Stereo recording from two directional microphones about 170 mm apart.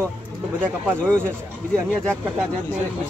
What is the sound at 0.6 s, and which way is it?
Speech, 10° right (ahead or behind).